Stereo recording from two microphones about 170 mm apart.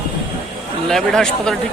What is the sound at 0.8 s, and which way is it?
Speech, 5° left (ahead or behind).